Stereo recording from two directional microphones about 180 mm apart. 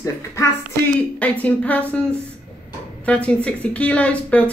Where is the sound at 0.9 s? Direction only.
10° left (ahead or behind).